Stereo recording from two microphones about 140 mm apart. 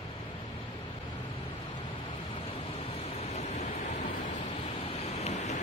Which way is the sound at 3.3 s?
55° left (ahead or behind).